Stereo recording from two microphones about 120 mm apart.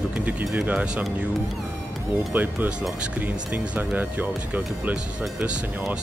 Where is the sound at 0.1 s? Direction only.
15° right (ahead or behind).